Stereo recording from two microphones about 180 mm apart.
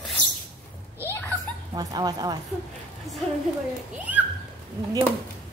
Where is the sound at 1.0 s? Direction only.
10° left (ahead or behind).